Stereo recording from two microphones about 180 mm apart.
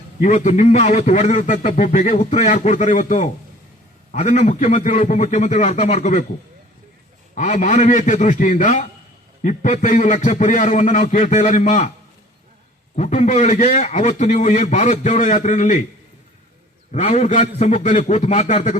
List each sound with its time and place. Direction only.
0.2 s a man's voice: 40° left (ahead or behind)
7.3 s a man's voice: 40° left (ahead or behind)
13.0 s a man's voice: 40° left (ahead or behind)
16.9 s a man's voice: 35° left (ahead or behind)